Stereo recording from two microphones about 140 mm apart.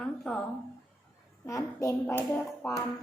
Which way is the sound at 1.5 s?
25° left (ahead or behind).